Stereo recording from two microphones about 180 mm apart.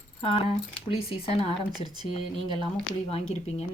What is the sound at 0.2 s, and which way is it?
Speech, 30° left (ahead or behind).